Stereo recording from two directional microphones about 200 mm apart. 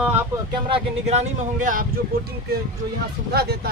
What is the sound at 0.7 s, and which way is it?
Speech, 30° right (ahead or behind).